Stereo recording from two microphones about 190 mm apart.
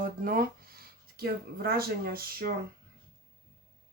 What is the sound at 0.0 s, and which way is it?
Speech, 50° right (ahead or behind).